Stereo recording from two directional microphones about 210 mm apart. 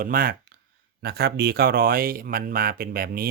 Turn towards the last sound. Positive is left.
turn(degrees=-45)  # may be behind; listen again after turning